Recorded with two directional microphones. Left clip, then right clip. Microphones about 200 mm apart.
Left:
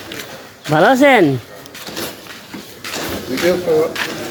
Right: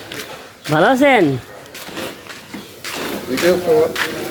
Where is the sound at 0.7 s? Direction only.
15° left (ahead or behind).